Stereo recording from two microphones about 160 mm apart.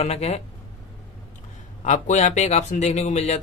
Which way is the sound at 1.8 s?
50° left (ahead or behind).